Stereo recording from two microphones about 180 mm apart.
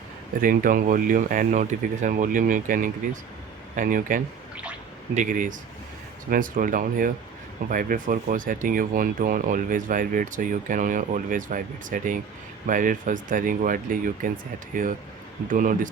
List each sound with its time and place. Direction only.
0.4 s speech: 50° right (ahead or behind)